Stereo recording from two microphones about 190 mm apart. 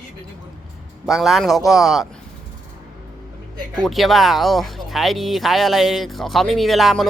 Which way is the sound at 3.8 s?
Centre (ahead or behind).